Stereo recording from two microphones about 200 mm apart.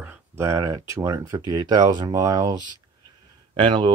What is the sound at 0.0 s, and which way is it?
Speech, 10° right (ahead or behind).